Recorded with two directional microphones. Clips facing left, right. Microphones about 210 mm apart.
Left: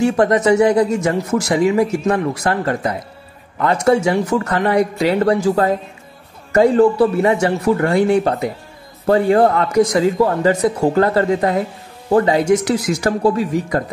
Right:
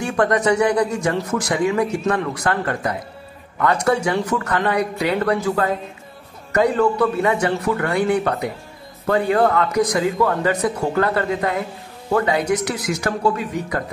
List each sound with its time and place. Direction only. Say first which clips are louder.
0.0 s a man's voice: left 4 dB; 25° left (ahead or behind)